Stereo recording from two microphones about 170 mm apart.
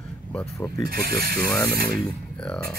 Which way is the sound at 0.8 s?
65° right (ahead or behind).